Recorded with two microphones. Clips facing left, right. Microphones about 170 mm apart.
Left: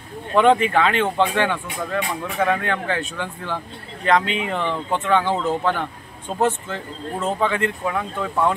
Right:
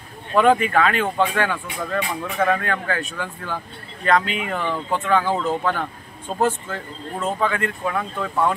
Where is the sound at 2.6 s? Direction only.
25° left (ahead or behind).